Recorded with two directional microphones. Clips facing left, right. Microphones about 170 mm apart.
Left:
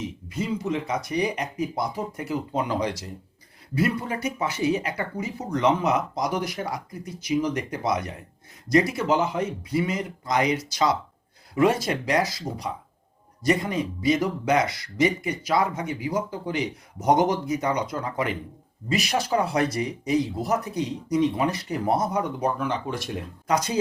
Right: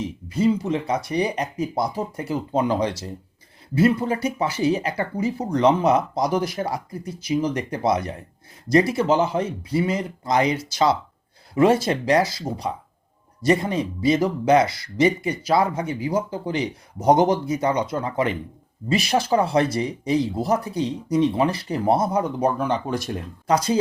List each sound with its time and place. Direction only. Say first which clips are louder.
0.3 s speech: right 7 dB; 30° right (ahead or behind)